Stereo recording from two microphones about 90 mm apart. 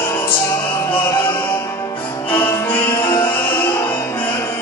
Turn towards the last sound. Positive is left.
turn(degrees=25)  # may be behind; listen again after turning